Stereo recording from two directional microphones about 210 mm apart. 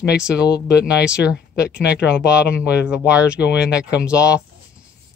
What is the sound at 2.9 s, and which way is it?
Speech, 5° right (ahead or behind).